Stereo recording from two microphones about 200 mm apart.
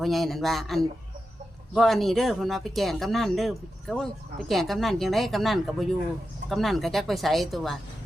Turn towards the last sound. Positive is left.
turn(degrees=0)  # may be behind; listen again after turning